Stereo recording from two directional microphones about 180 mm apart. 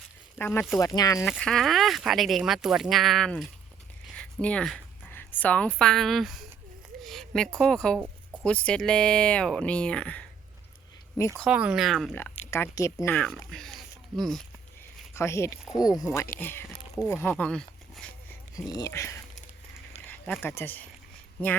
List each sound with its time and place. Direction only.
0.3 s speech: 10° left (ahead or behind)
1.2 s a woman's voice: centre (ahead or behind)
11.3 s speech: 5° right (ahead or behind)
12.5 s speech: 15° left (ahead or behind)
13.1 s speech: 5° left (ahead or behind)
15.1 s speech: 15° left (ahead or behind)
18.7 s speech: 20° left (ahead or behind)
20.4 s speech: 10° left (ahead or behind)